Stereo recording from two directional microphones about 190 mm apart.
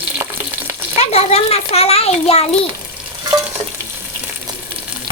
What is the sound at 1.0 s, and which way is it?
A child's voice, 35° left (ahead or behind).